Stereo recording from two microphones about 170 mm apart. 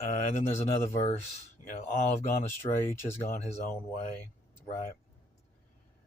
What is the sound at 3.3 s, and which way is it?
Speech, 40° left (ahead or behind).